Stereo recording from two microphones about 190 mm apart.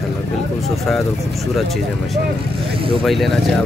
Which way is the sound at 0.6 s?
Centre (ahead or behind).